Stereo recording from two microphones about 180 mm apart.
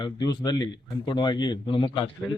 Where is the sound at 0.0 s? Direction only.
20° left (ahead or behind).